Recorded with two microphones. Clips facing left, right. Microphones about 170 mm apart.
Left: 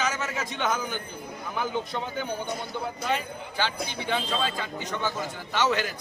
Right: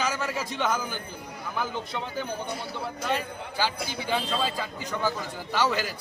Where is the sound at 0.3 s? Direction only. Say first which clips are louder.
Right 1 dB; 5° right (ahead or behind).